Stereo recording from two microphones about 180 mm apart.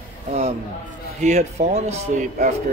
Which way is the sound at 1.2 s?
40° right (ahead or behind).